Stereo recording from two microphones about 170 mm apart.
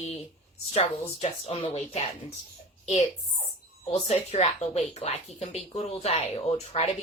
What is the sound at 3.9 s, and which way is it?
Speech, 40° left (ahead or behind).